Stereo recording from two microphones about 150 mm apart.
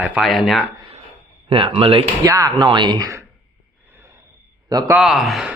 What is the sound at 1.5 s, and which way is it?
Speech, 35° right (ahead or behind).